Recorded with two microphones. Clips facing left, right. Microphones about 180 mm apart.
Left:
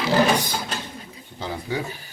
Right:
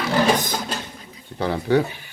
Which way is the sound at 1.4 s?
65° right (ahead or behind).